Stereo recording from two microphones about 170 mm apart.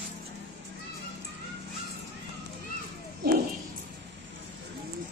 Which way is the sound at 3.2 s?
70° right (ahead or behind).